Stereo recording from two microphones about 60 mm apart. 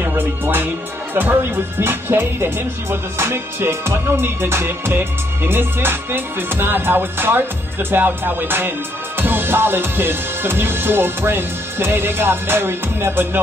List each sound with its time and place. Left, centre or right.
0.0 s speech: right
1.1 s music: right